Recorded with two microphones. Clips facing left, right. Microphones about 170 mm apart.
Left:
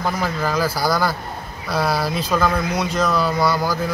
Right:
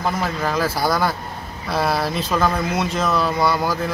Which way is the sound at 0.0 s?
Centre (ahead or behind).